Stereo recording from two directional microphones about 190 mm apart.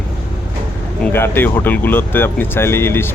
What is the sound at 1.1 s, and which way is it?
Speech, 10° left (ahead or behind).